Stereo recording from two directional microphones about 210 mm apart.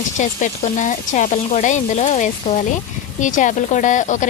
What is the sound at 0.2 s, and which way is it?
Speech, 35° left (ahead or behind).